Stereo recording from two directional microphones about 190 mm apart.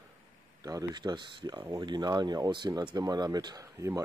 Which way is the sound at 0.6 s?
20° right (ahead or behind).